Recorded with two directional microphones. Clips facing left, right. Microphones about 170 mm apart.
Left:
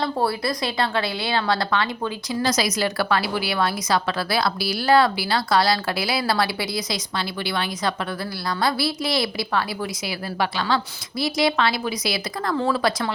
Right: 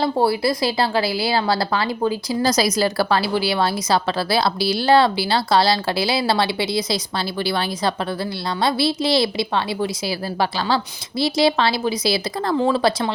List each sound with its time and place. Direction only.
0.0 s a woman's voice: 30° right (ahead or behind)
12.5 s speech: 20° right (ahead or behind)